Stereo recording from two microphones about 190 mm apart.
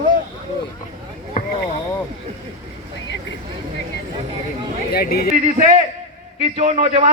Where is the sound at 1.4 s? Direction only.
50° left (ahead or behind).